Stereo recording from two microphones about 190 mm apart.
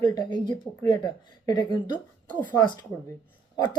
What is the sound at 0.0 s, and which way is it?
Speech, 25° left (ahead or behind).